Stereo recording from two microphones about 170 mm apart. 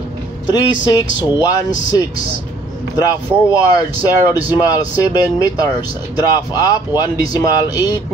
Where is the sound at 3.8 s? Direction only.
20° left (ahead or behind).